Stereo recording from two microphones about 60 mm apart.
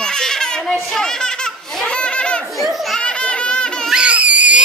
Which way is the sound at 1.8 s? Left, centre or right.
Centre.